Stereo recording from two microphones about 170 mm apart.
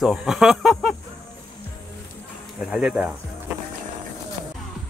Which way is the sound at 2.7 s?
5° right (ahead or behind).